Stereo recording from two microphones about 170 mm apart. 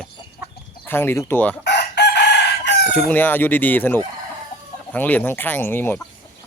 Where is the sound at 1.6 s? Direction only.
80° left.